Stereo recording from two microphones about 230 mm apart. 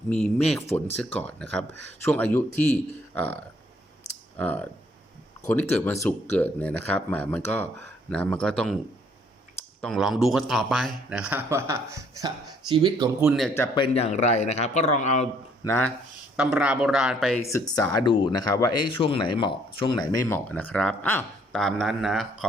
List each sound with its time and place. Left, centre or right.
0.1 s speech: centre
4.4 s speech: centre
9.8 s speech: centre
13.2 s speech: centre
13.6 s a man's voice: left
15.6 s speech: centre
16.4 s speech: centre
17.5 s speech: centre